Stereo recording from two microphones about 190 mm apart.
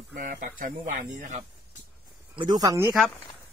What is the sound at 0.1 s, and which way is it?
Speech, 45° right (ahead or behind).